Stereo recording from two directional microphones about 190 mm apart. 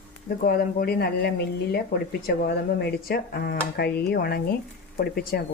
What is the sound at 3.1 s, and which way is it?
Speech, 50° left (ahead or behind).